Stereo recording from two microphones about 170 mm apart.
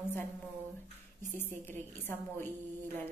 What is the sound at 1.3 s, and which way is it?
Speech, 10° left (ahead or behind).